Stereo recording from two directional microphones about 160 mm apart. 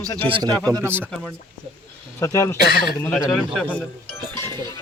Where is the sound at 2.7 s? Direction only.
75° left (ahead or behind).